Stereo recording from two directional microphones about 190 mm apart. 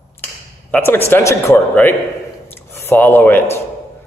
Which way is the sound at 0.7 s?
10° left (ahead or behind).